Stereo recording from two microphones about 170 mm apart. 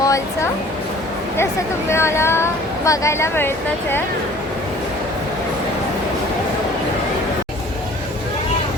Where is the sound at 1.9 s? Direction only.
15° left (ahead or behind).